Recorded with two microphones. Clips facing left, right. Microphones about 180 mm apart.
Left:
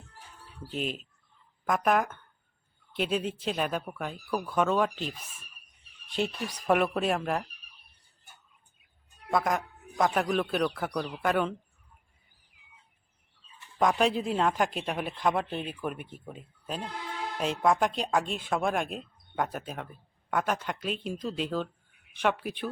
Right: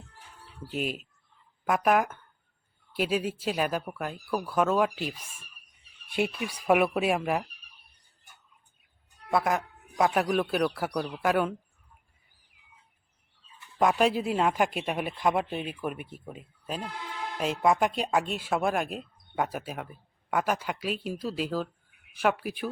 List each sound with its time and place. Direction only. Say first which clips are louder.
0.7 s speech: right 2 dB; 5° right (ahead or behind)
9.3 s speech: right 1 dB; 5° right (ahead or behind)
13.7 s speech: right 1 dB; 5° right (ahead or behind)